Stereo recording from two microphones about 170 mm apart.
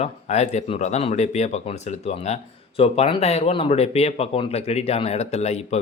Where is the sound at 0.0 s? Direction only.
40° left (ahead or behind).